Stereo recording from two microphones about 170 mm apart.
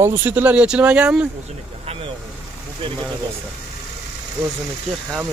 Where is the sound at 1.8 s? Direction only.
35° right (ahead or behind).